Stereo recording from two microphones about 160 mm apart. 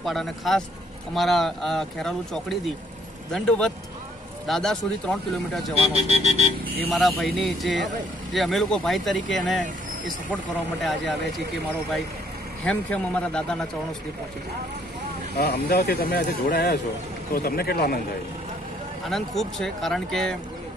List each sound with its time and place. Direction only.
0.0 s speech: centre (ahead or behind)
5.9 s speech: 40° right (ahead or behind)
6.9 s speech: centre (ahead or behind)
12.6 s a man's voice: 5° left (ahead or behind)
15.3 s speech: 85° left
17.3 s speech: 70° left (ahead or behind)
19.0 s speech: centre (ahead or behind)